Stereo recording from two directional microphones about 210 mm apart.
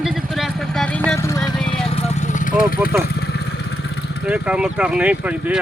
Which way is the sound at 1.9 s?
30° left (ahead or behind).